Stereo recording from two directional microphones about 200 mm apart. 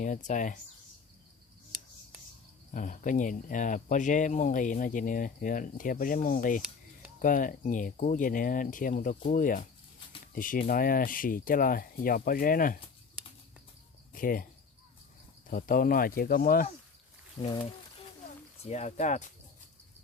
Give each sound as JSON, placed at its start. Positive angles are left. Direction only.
{"t": 0.3, "sound": "speech", "side_deg": 40}
{"t": 2.7, "sound": "speech", "side_deg": 40}
{"t": 14.1, "sound": "speech", "side_deg": 45}
{"t": 15.4, "sound": "speech", "side_deg": 45}
{"t": 17.4, "sound": "speech", "side_deg": 30}